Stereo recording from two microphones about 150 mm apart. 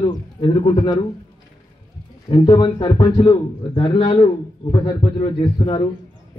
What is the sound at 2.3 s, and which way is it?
A man's voice, 35° left (ahead or behind).